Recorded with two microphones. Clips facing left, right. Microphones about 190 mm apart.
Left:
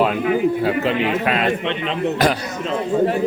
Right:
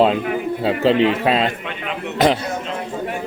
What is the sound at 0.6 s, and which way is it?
Speech, 30° right (ahead or behind).